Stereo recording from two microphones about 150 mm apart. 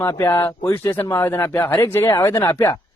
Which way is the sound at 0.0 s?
20° left (ahead or behind).